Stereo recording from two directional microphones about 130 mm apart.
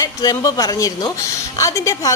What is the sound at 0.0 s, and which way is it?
A woman's voice, 30° left (ahead or behind).